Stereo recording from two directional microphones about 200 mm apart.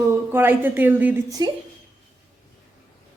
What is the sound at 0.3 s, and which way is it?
Speech, 10° right (ahead or behind).